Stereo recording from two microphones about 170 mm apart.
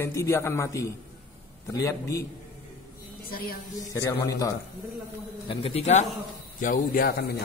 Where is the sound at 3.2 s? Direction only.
60° left (ahead or behind).